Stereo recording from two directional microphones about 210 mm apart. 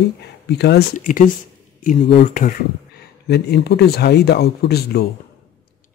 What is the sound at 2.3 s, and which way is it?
Speech, 40° left (ahead or behind).